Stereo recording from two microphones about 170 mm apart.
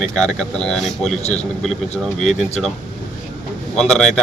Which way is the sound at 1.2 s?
40° left (ahead or behind).